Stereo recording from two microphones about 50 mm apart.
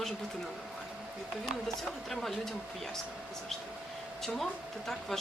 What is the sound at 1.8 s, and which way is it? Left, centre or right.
Speech, centre.